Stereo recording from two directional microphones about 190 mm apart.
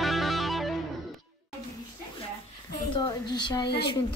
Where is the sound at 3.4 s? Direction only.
20° left (ahead or behind).